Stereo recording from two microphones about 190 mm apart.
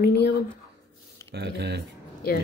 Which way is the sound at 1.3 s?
60° right (ahead or behind).